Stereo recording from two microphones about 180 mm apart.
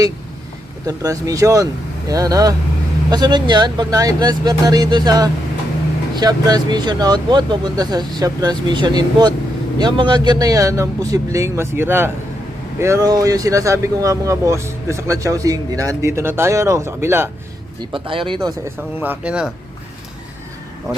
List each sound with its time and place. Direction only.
0.9 s speech: 20° right (ahead or behind)
17.9 s speech: 30° right (ahead or behind)
18.8 s speech: 10° right (ahead or behind)